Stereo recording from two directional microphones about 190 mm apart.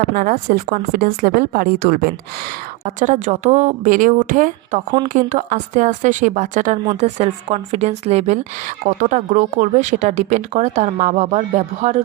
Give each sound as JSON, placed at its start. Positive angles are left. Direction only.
{"t": 0.1, "sound": "speech", "side_deg": -50}
{"t": 2.8, "sound": "speech", "side_deg": -40}